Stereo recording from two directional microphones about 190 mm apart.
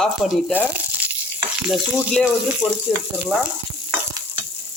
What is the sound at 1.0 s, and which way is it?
Frying, 10° right (ahead or behind).